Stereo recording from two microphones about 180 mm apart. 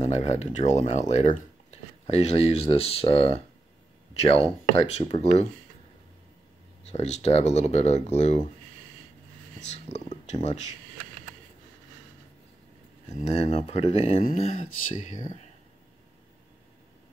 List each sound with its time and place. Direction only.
0.0 s speech: 40° left (ahead or behind)
6.9 s speech: 35° left (ahead or behind)
9.7 s speech: 40° left (ahead or behind)
13.1 s speech: 35° left (ahead or behind)